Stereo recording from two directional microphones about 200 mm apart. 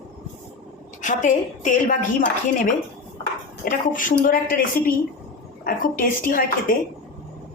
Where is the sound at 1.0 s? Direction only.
40° left (ahead or behind).